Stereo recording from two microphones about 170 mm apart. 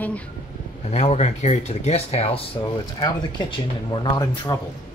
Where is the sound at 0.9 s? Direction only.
40° left (ahead or behind).